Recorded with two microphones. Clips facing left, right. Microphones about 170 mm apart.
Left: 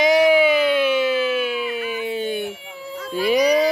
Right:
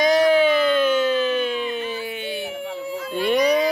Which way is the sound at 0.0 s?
10° left (ahead or behind).